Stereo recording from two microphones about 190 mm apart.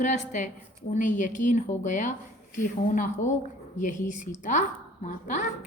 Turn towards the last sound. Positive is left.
turn(degrees=40)  # may be behind; listen again after turning